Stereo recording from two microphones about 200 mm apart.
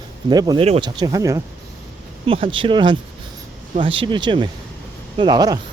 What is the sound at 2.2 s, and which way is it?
Speech, 25° right (ahead or behind).